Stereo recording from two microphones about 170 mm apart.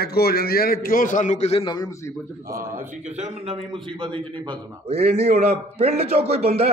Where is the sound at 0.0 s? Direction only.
65° left (ahead or behind); by 1.9 s 30° left (ahead or behind).